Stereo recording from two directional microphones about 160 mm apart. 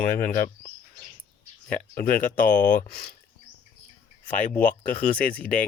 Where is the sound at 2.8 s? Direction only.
30° left (ahead or behind).